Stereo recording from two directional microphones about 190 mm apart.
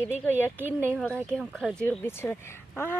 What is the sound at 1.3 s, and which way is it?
Speech, 5° left (ahead or behind).